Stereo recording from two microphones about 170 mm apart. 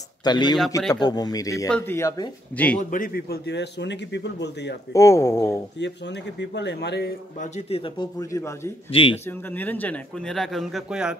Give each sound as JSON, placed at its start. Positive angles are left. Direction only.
{"t": 0.2, "sound": "speech", "side_deg": 25}
{"t": 2.5, "sound": "speech", "side_deg": 10}
{"t": 2.8, "sound": "a man's voice", "side_deg": 50}
{"t": 3.4, "sound": "speech", "side_deg": 90}
{"t": 4.9, "sound": "speech", "side_deg": 15}
{"t": 5.8, "sound": "speech", "side_deg": 90}
{"t": 7.3, "sound": "speech", "side_deg": 40}
{"t": 8.2, "sound": "speech", "side_deg": 15}
{"t": 8.9, "sound": "speech", "side_deg": 30}
{"t": 9.5, "sound": "a man's voice", "side_deg": 10}